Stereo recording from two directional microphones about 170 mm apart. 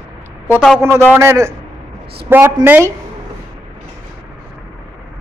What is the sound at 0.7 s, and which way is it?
A man's voice, 15° right (ahead or behind).